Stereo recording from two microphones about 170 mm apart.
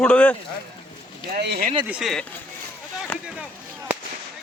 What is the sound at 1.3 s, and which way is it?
Speech, 70° right (ahead or behind).